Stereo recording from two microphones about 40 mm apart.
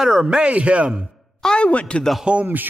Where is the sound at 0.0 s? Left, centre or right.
Centre.